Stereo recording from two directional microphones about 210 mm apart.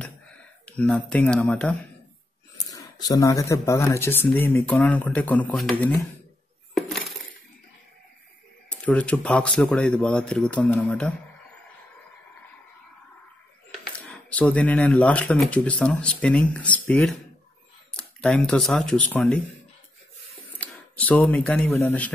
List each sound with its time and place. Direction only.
0.7 s speech: 5° left (ahead or behind)
2.5 s speech: 15° left (ahead or behind)
6.7 s glass: centre (ahead or behind)
8.6 s speech: 5° left (ahead or behind)
13.9 s speech: 5° left (ahead or behind)
20.5 s speech: 5° left (ahead or behind)